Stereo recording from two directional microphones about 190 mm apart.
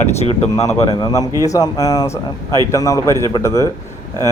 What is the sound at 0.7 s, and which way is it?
Speech, 25° left (ahead or behind).